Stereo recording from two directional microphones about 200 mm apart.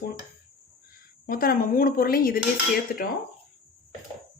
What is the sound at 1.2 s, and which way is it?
Speech, 45° left (ahead or behind).